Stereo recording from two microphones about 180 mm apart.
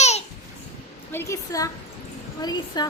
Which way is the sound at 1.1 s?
15° left (ahead or behind).